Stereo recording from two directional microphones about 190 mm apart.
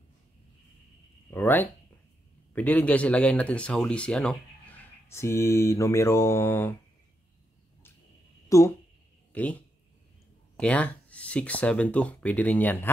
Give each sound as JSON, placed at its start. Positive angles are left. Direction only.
{"t": 1.3, "sound": "speech", "side_deg": 10}
{"t": 8.5, "sound": "speech", "side_deg": 15}
{"t": 10.6, "sound": "speech", "side_deg": 5}